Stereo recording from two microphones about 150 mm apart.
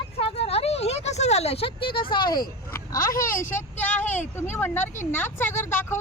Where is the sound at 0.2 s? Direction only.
40° left (ahead or behind).